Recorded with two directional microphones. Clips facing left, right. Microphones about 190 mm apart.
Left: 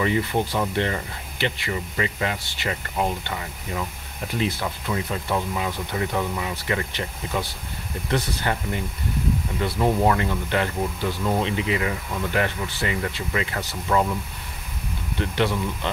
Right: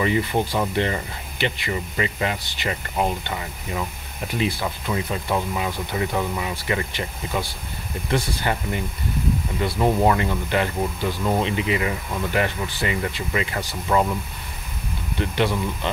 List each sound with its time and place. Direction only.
0.0 s speech: 15° right (ahead or behind)
15.1 s speech: 15° right (ahead or behind)